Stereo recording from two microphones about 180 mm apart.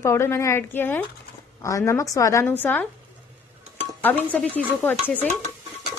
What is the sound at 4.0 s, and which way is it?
A woman's voice, 10° left (ahead or behind).